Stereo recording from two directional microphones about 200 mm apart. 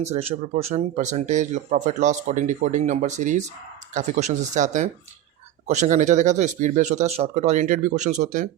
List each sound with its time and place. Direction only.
0.0 s speech: 30° right (ahead or behind)